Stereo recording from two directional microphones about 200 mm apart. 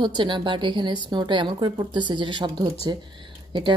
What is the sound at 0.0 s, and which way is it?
A woman's voice, 25° right (ahead or behind).